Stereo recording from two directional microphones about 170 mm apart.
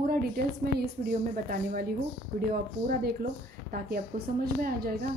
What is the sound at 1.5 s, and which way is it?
Speech, 55° right (ahead or behind).